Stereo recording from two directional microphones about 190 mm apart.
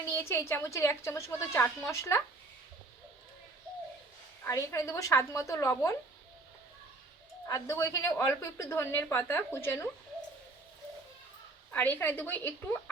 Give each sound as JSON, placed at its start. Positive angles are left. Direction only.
{"t": 0.0, "sound": "a woman's voice", "side_deg": 15}
{"t": 4.4, "sound": "a woman's voice", "side_deg": 15}
{"t": 7.4, "sound": "a woman's voice", "side_deg": 15}
{"t": 11.7, "sound": "a woman's voice", "side_deg": 10}